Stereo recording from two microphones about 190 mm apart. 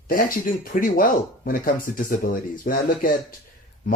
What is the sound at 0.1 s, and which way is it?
Speech, 45° left (ahead or behind).